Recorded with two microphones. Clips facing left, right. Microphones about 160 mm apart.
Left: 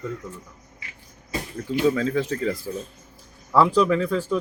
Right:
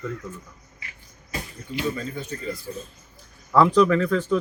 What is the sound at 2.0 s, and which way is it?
Speech, 90° left.